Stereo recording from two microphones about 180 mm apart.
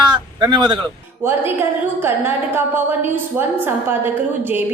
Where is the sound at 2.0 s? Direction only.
10° right (ahead or behind).